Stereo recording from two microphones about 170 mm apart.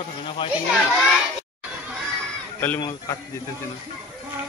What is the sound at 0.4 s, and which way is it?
Speech, 30° left (ahead or behind).